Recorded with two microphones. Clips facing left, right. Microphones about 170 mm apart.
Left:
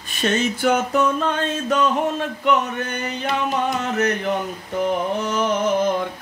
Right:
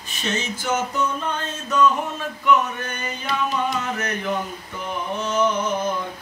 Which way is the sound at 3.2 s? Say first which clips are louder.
Left 2 dB; 60° left (ahead or behind).